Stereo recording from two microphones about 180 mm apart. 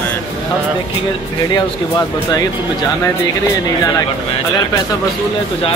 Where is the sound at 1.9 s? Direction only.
20° left (ahead or behind).